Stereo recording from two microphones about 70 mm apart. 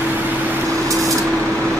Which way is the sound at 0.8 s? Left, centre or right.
Right.